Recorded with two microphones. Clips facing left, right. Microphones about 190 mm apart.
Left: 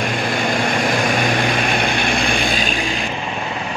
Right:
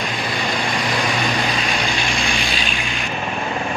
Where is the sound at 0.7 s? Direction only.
50° left (ahead or behind).